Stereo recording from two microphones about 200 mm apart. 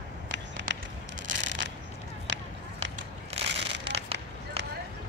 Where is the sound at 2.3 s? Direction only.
65° right (ahead or behind).